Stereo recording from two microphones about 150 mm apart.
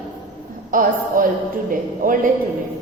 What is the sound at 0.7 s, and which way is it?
A woman's voice, 70° right (ahead or behind).